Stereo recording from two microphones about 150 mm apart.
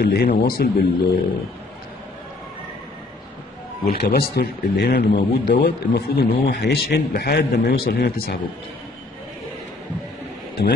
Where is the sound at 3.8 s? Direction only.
90° left.